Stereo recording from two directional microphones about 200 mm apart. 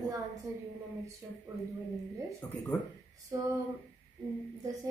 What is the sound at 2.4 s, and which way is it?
Speech, 5° left (ahead or behind).